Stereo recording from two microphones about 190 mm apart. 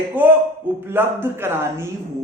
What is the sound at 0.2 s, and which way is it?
A man's voice, 10° right (ahead or behind).